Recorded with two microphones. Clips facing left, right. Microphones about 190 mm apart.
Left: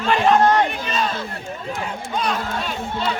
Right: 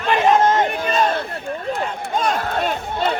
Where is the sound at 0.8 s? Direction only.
45° right (ahead or behind).